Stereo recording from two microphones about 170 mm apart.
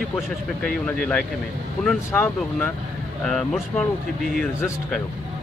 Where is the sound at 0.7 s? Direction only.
5° left (ahead or behind).